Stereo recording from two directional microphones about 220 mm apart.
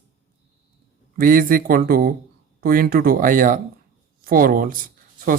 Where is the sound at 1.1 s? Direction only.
40° right (ahead or behind).